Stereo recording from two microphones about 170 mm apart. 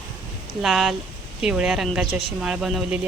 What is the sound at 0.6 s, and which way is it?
A woman's voice, centre (ahead or behind).